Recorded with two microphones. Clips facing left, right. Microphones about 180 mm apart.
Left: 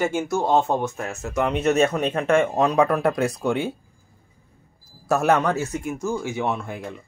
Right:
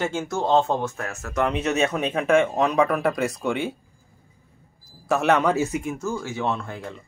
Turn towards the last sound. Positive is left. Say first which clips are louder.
# left 1 dB
turn(degrees=15)  # may be behind; listen again after turning